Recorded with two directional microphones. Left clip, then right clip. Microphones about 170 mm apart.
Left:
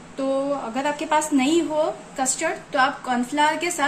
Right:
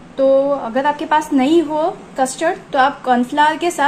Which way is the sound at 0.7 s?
20° right (ahead or behind).